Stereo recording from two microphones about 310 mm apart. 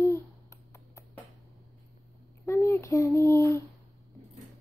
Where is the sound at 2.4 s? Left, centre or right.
Centre.